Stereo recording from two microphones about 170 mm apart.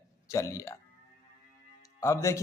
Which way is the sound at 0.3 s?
20° left (ahead or behind).